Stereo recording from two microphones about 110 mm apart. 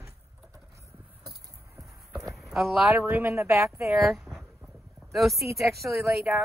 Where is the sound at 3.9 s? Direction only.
5° right (ahead or behind).